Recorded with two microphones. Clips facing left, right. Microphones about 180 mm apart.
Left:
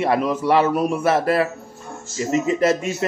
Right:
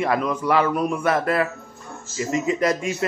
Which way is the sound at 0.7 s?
10° left (ahead or behind).